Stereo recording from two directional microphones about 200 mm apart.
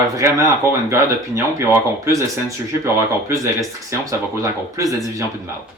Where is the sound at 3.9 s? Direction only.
15° right (ahead or behind).